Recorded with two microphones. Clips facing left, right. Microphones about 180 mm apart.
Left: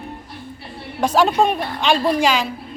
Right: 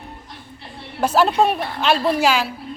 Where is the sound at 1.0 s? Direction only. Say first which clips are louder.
Even; centre (ahead or behind).